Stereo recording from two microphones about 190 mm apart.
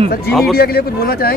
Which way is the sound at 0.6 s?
55° left (ahead or behind).